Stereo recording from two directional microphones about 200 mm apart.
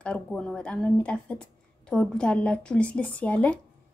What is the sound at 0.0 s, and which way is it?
A woman's voice, 5° left (ahead or behind).